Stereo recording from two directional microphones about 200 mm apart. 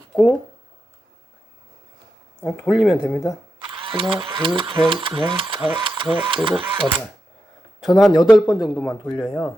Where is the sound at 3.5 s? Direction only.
25° right (ahead or behind).